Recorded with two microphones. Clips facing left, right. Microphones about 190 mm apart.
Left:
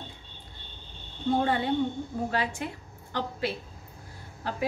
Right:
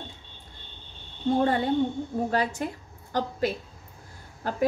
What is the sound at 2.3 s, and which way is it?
A woman's voice, 40° right (ahead or behind).